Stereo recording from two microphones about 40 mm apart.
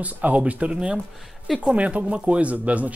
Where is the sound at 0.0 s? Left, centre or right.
Right.